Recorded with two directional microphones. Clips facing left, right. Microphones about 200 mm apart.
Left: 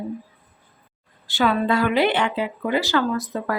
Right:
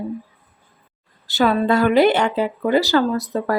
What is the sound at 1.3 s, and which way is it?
Speech, 40° right (ahead or behind).